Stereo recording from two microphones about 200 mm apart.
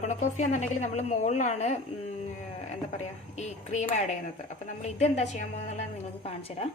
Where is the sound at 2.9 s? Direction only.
35° left (ahead or behind).